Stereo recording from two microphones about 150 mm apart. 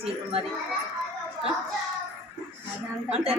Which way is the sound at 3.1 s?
40° right (ahead or behind).